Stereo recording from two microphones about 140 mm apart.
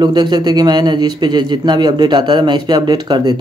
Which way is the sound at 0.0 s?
30° right (ahead or behind).